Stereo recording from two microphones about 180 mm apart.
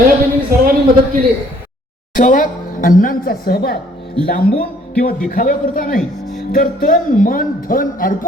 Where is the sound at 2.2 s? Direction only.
50° left (ahead or behind).